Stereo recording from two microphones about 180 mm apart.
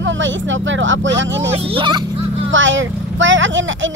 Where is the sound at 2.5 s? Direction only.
90° right.